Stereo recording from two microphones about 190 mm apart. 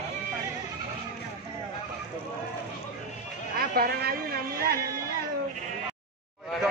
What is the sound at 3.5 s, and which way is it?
Music, 50° right (ahead or behind).